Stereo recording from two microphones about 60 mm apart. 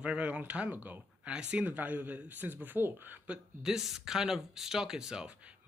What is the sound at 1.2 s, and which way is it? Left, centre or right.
A man's voice, centre.